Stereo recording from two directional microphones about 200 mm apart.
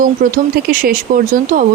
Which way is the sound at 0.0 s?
45° right (ahead or behind).